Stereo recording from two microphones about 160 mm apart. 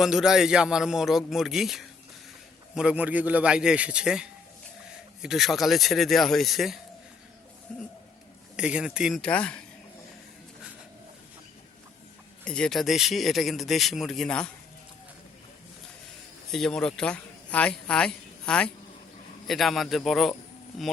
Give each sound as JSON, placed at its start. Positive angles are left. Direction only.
{"t": 0.0, "sound": "a man's voice", "side_deg": -5}
{"t": 8.5, "sound": "speech", "side_deg": -5}
{"t": 12.5, "sound": "speech", "side_deg": 5}
{"t": 16.5, "sound": "speech", "side_deg": 0}